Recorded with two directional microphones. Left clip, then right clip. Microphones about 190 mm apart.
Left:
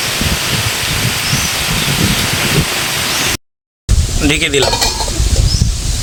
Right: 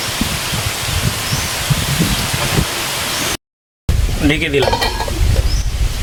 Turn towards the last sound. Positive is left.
turn(degrees=20)  # may be behind; listen again after turning